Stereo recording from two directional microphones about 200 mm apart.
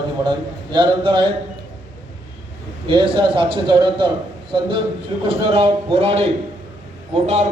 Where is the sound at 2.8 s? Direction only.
25° right (ahead or behind).